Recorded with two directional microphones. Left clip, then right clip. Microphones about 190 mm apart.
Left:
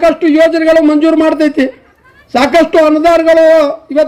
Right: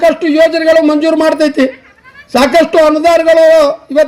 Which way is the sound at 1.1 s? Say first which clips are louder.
Even; 40° right (ahead or behind).